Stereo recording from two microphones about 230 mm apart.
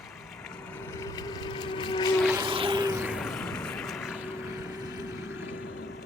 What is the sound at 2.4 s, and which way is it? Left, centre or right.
Vehicle, right.